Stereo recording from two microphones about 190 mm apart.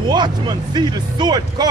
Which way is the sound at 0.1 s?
25° right (ahead or behind).